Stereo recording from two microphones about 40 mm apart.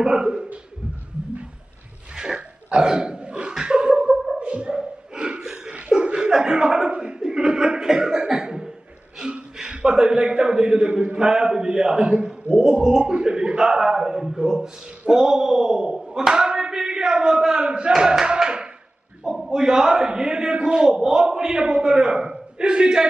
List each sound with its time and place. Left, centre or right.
0.0 s a man's voice: centre
2.1 s a sound: centre
4.4 s dog: right
7.0 s cough: centre
9.2 s a man's voice: right